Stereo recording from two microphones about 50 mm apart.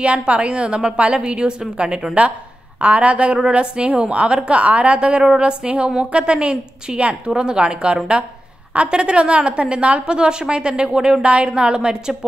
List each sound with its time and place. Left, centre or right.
0.0 s a woman's voice: right